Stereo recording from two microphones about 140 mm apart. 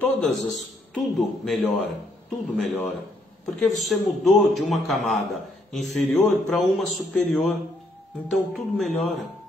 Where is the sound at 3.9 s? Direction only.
Centre (ahead or behind).